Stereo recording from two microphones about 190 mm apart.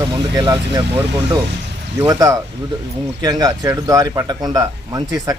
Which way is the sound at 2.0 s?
20° right (ahead or behind).